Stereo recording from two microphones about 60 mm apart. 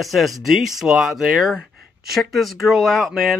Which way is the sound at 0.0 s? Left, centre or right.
Centre.